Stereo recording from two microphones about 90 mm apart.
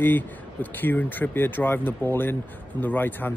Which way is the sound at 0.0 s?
20° left (ahead or behind).